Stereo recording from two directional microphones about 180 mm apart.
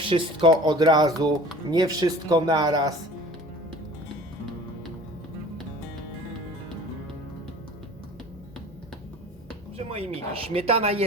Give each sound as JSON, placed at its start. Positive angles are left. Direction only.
{"t": 0.0, "sound": "speech", "side_deg": -30}
{"t": 9.7, "sound": "speech", "side_deg": -35}